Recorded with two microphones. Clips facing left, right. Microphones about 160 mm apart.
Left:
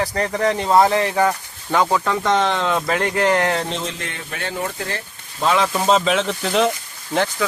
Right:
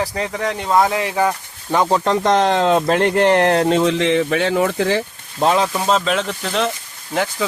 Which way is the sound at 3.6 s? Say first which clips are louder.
Right 11 dB; 60° right (ahead or behind).